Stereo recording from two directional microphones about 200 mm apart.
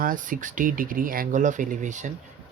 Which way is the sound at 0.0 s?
40° right (ahead or behind).